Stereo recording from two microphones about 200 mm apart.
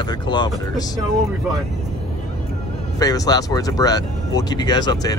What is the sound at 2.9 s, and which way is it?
Speech, 20° left (ahead or behind).